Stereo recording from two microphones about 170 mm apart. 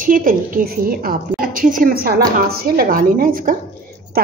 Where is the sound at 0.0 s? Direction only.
55° right (ahead or behind).